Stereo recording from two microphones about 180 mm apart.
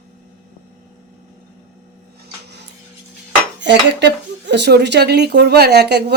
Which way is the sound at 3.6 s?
75° right (ahead or behind).